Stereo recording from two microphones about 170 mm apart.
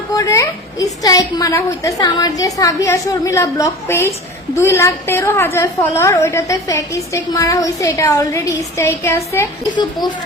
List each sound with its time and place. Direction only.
0.1 s a woman's voice: 20° left (ahead or behind)